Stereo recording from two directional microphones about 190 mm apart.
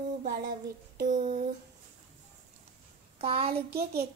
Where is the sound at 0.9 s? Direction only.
40° right (ahead or behind).